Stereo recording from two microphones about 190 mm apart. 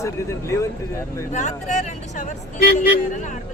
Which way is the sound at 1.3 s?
40° left (ahead or behind).